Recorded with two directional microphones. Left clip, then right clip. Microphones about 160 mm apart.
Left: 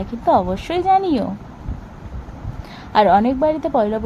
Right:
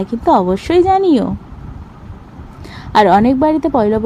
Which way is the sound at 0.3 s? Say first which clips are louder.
Right 4 dB; 30° right (ahead or behind).